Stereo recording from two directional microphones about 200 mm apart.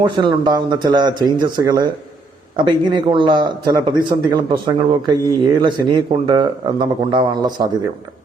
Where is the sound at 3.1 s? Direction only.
25° right (ahead or behind).